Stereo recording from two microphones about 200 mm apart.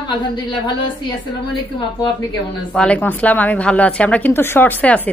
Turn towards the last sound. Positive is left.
turn(degrees=10)  # may be behind; listen again after turning